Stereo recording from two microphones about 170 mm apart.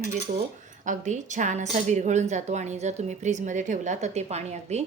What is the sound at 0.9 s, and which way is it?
A woman's voice, 45° right (ahead or behind).